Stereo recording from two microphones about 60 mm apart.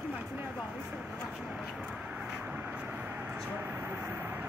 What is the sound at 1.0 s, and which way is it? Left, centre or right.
Speech, centre.